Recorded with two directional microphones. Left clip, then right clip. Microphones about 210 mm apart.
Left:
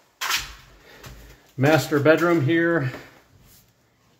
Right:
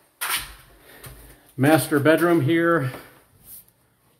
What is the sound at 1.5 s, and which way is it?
Speech, 10° right (ahead or behind).